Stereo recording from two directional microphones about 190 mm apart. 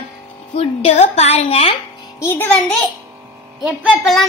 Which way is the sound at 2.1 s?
15° left (ahead or behind).